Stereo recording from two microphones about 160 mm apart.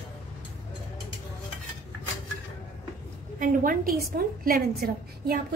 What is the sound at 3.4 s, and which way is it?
A woman's voice, 65° right (ahead or behind).